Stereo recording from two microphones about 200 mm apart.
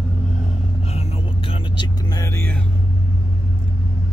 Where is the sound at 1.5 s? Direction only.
20° left (ahead or behind).